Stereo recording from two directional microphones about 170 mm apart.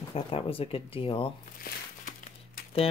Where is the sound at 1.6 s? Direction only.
50° left (ahead or behind).